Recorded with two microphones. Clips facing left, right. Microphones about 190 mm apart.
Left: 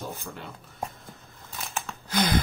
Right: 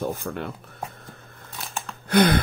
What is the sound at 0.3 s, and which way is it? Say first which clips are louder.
Speech: right 9 dB; 55° right (ahead or behind).